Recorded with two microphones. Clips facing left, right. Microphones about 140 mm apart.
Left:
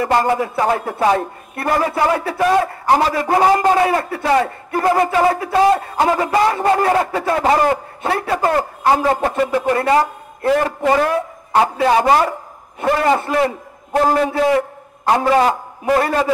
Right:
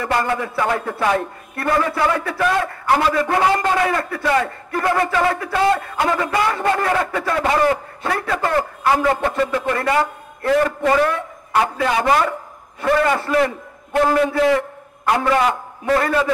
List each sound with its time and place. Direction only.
0.0 s a man's voice: 30° left (ahead or behind)